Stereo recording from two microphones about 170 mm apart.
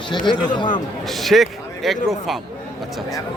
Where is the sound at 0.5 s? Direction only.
25° left (ahead or behind).